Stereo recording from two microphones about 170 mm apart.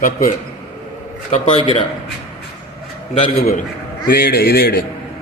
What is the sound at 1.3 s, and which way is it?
Speech, 35° left (ahead or behind).